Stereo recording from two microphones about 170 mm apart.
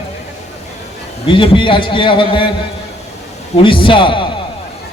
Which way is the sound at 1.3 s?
30° left (ahead or behind).